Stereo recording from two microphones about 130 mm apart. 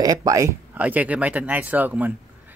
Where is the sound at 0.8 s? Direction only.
10° right (ahead or behind).